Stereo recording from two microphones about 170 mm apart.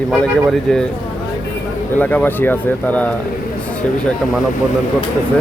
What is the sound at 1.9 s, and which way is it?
Speech, 10° left (ahead or behind).